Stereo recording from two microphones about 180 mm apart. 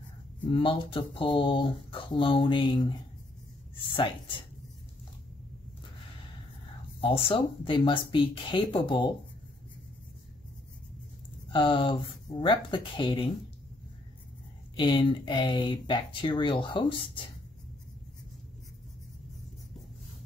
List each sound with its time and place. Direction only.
0.5 s speech: 30° left (ahead or behind)
7.0 s speech: 30° left (ahead or behind)
11.5 s speech: 30° left (ahead or behind)
14.8 s speech: 25° left (ahead or behind)